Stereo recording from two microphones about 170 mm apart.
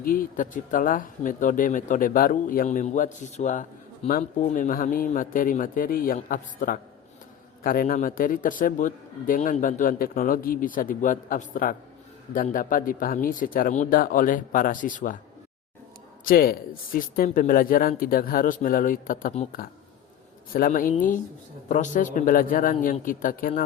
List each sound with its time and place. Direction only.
0.0 s speech: 55° left (ahead or behind)
16.2 s speech: 60° left (ahead or behind)